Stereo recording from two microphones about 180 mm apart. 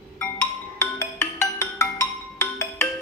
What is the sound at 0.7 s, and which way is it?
Music, 10° left (ahead or behind).